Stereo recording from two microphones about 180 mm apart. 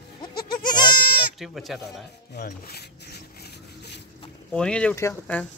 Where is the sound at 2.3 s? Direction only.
60° left (ahead or behind).